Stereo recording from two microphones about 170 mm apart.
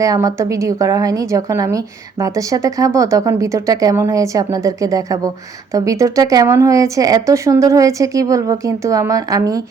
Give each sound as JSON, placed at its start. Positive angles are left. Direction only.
{"t": 0.0, "sound": "a woman's voice", "side_deg": -20}